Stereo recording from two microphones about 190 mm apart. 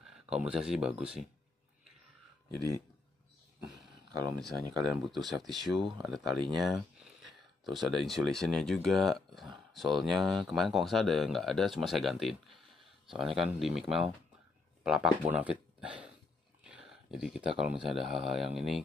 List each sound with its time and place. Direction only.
0.0 s speech: 5° right (ahead or behind)
4.4 s speech: centre (ahead or behind)
16.6 s a sound: 5° right (ahead or behind)
17.8 s speech: centre (ahead or behind)